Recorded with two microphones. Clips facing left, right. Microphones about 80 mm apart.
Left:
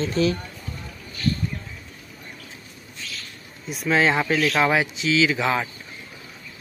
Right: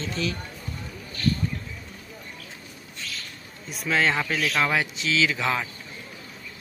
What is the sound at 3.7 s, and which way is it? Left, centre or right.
Speech, centre.